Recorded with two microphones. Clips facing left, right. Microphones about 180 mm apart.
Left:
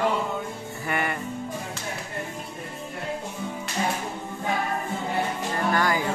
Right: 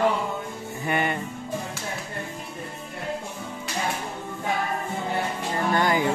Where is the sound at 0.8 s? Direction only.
20° right (ahead or behind).